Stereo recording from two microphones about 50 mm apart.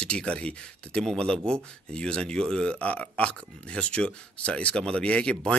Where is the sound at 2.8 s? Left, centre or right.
Left.